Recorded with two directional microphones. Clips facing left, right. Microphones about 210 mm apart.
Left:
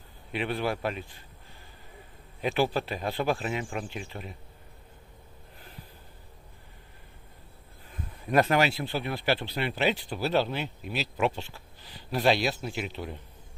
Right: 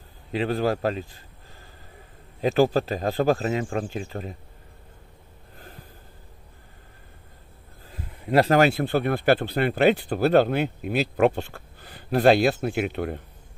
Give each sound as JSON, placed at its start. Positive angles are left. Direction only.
{"t": 0.3, "sound": "a man's voice", "side_deg": -40}
{"t": 2.4, "sound": "speech", "side_deg": -40}
{"t": 7.9, "sound": "a sound", "side_deg": -30}
{"t": 8.5, "sound": "speech", "side_deg": -50}